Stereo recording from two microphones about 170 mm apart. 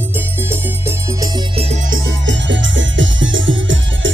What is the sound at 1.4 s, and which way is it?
Music, 35° right (ahead or behind).